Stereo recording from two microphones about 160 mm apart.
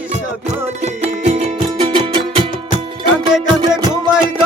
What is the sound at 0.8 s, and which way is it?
Music, 40° right (ahead or behind).